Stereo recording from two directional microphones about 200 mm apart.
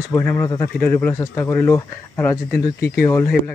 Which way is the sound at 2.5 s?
50° left (ahead or behind).